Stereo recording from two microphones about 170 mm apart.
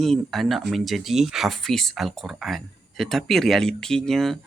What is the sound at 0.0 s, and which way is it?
Speech, centre (ahead or behind).